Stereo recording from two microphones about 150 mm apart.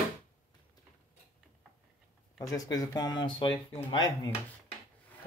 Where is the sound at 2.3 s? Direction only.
25° left (ahead or behind).